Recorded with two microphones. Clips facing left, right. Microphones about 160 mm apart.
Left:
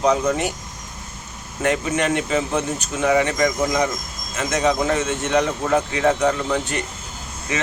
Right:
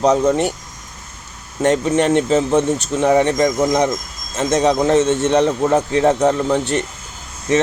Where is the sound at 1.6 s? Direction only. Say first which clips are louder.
Right 6 dB; 35° right (ahead or behind).